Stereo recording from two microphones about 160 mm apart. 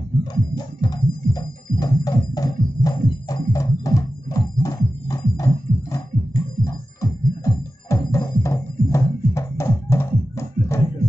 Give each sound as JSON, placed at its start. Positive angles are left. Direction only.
{"t": 0.2, "sound": "music", "side_deg": 25}